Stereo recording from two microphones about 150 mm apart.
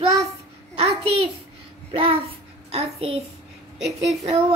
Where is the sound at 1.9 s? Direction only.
35° right (ahead or behind).